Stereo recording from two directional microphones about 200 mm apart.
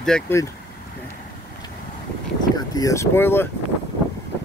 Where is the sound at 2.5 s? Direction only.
20° left (ahead or behind).